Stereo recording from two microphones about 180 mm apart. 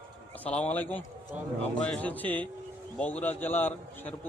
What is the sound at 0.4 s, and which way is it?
A man's voice, 10° left (ahead or behind).